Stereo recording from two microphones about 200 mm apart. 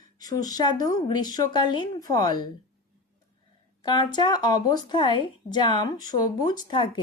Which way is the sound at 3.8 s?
20° left (ahead or behind).